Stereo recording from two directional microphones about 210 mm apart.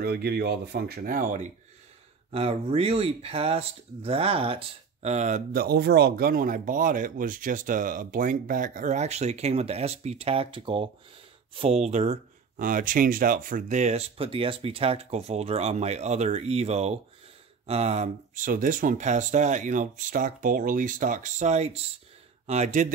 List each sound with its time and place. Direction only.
0.0 s speech: 50° right (ahead or behind)
2.3 s speech: 30° right (ahead or behind)